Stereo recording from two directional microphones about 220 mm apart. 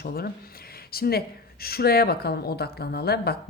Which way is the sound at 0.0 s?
45° left (ahead or behind).